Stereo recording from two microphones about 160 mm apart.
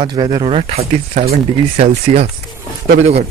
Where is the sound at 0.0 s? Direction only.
25° right (ahead or behind).